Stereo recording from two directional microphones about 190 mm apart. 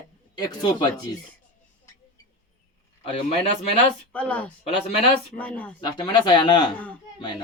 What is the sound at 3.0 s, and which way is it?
Speech, 30° left (ahead or behind).